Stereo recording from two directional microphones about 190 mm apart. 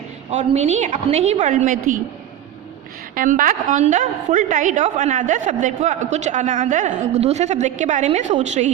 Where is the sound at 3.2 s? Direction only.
45° right (ahead or behind).